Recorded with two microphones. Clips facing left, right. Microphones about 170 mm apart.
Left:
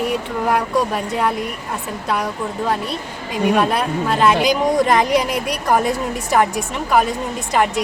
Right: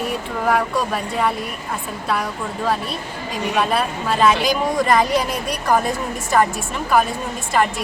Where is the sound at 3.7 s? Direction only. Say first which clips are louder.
Left 2 dB; 15° left (ahead or behind).